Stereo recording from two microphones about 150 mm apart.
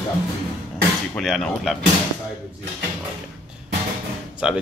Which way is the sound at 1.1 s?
Centre (ahead or behind).